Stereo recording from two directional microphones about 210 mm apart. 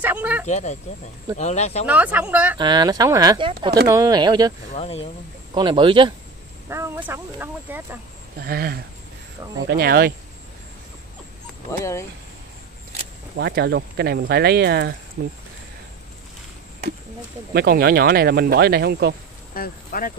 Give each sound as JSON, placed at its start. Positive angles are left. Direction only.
{"t": 0.0, "sound": "speech", "side_deg": -5}
{"t": 0.5, "sound": "speech", "side_deg": 35}
{"t": 1.9, "sound": "speech", "side_deg": -5}
{"t": 2.5, "sound": "speech", "side_deg": -20}
{"t": 4.7, "sound": "speech", "side_deg": 30}
{"t": 5.5, "sound": "speech", "side_deg": -20}
{"t": 6.7, "sound": "speech", "side_deg": -10}
{"t": 8.4, "sound": "speech", "side_deg": -45}
{"t": 11.8, "sound": "speech", "side_deg": 15}
{"t": 13.4, "sound": "speech", "side_deg": -50}
{"t": 17.5, "sound": "speech", "side_deg": -50}
{"t": 19.5, "sound": "speech", "side_deg": 45}